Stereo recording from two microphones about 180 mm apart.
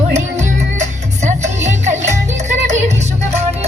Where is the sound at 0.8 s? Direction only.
40° right (ahead or behind).